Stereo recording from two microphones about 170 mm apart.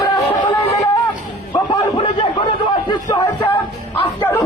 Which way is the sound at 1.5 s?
25° left (ahead or behind).